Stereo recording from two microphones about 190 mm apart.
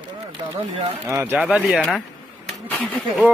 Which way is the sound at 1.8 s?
Centre (ahead or behind).